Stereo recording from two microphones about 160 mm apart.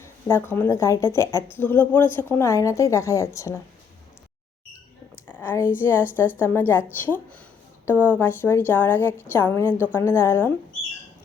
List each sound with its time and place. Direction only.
0.0 s a woman's voice: 15° left (ahead or behind)
5.2 s a woman's voice: 10° left (ahead or behind)